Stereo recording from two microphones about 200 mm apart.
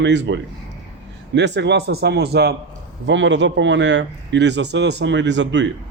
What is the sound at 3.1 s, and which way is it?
Speech, 65° right (ahead or behind).